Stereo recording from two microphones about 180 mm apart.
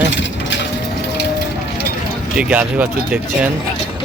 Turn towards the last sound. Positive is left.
turn(degrees=-10)  # may be behind; listen again after turning